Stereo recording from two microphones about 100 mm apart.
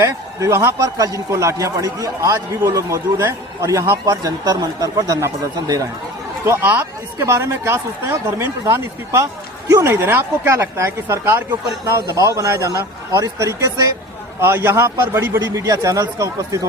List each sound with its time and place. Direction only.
0.0 s a man's voice: 30° right (ahead or behind)